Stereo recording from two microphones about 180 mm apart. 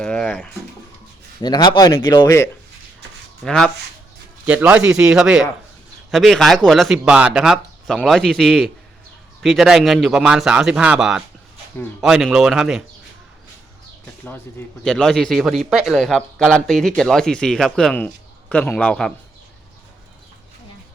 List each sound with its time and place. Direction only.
0.0 s a sound: 5° left (ahead or behind)
1.4 s speech: 25° left (ahead or behind)
3.4 s speech: 5° left (ahead or behind)
4.4 s speech: 10° right (ahead or behind)
14.8 s speech: 5° left (ahead or behind)